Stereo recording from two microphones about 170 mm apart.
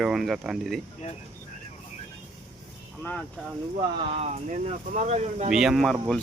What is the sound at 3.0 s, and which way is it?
Speech, 10° left (ahead or behind).